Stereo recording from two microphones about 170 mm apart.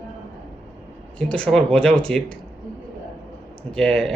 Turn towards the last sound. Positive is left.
turn(degrees=5)  # may be behind; listen again after turning